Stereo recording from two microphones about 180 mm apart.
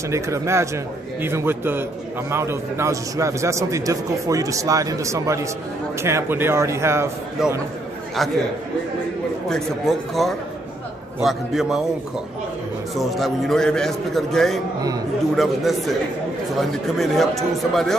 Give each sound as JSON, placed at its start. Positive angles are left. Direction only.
{"t": 0.1, "sound": "a man's voice", "side_deg": -15}
{"t": 7.4, "sound": "a man's voice", "side_deg": -5}
{"t": 9.5, "sound": "a man's voice", "side_deg": 0}
{"t": 12.9, "sound": "a man's voice", "side_deg": 0}